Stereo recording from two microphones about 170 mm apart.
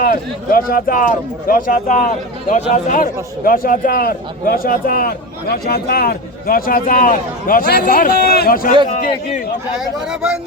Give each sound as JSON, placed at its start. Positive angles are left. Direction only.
{"t": 0.0, "sound": "a man's voice", "side_deg": 55}
{"t": 10.1, "sound": "speech", "side_deg": -5}